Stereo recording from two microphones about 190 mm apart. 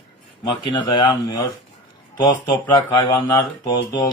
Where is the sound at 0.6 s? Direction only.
25° left (ahead or behind).